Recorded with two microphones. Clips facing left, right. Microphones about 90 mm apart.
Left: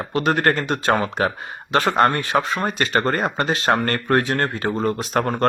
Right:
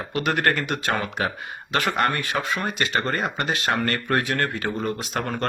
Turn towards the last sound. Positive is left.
turn(degrees=40)  # may be behind; listen again after turning